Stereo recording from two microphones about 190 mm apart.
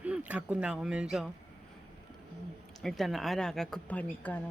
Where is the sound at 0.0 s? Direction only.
5° right (ahead or behind).